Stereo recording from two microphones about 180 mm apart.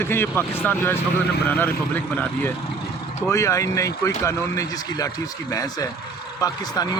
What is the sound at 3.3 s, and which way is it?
Speech, 15° left (ahead or behind).